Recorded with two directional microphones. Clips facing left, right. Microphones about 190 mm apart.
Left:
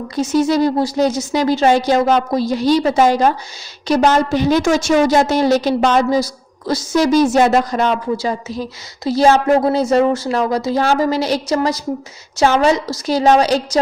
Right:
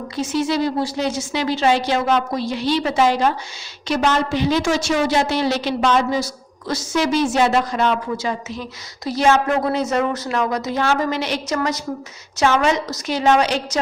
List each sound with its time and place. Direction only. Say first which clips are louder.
0.2 s a woman's voice: left 6 dB; 40° left (ahead or behind)